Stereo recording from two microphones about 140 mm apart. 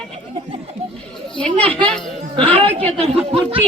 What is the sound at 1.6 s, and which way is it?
Speech, 10° left (ahead or behind).